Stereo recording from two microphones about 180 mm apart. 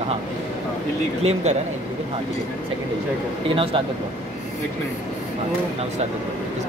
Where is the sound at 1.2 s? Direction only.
35° right (ahead or behind).